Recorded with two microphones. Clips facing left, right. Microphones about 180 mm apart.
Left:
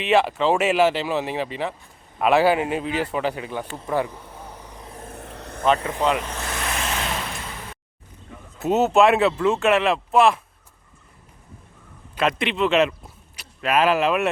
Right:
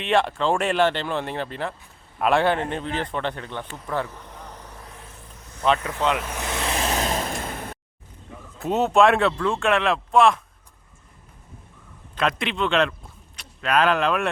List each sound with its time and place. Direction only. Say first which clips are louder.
0.0 s speech: left 2 dB; 5° left (ahead or behind)
3.7 s speech: left 4 dB; 30° left (ahead or behind)
3.9 s vehicle: left 4 dB; 10° left (ahead or behind)
5.0 s vehicle: left 9 dB; 65° left (ahead or behind)
6.1 s speech: left 1 dB; centre (ahead or behind)
6.3 s vehicle: right 1 dB; 15° right (ahead or behind)
6.7 s vehicle: right 4 dB; 35° right (ahead or behind); by 7.8 s 50° right (ahead or behind)
8.5 s speech: left 2 dB; 5° left (ahead or behind)
12.1 s speech: left 2 dB; centre (ahead or behind)